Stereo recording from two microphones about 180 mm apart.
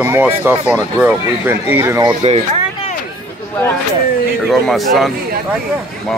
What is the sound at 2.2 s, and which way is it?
Speech, 35° right (ahead or behind).